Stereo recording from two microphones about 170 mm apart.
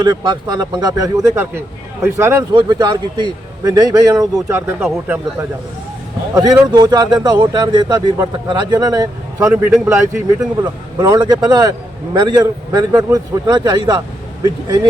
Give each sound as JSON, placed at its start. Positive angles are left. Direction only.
{"t": 0.0, "sound": "a man's voice", "side_deg": -25}
{"t": 2.5, "sound": "a man's voice", "side_deg": -25}
{"t": 6.3, "sound": "a man's voice", "side_deg": -20}